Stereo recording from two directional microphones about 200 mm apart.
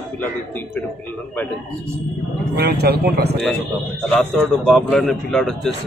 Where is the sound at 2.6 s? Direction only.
55° right (ahead or behind).